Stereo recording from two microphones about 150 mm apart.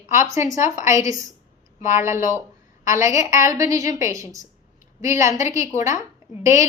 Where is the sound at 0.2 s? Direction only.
20° right (ahead or behind).